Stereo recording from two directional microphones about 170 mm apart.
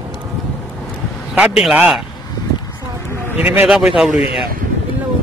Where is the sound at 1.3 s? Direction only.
5° right (ahead or behind).